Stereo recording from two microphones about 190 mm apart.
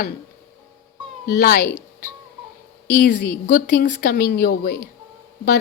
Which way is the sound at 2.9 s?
55° left (ahead or behind).